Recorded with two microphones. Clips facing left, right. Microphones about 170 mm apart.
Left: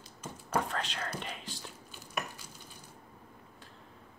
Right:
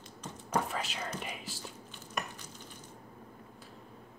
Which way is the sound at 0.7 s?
5° right (ahead or behind).